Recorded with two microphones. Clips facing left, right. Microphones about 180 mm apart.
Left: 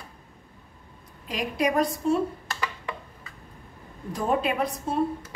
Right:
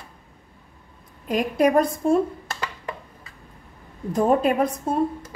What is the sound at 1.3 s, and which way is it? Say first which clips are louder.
Speech: right 7 dB; 50° right (ahead or behind).